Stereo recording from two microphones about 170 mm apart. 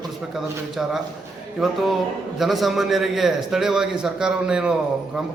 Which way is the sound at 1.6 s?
Centre (ahead or behind).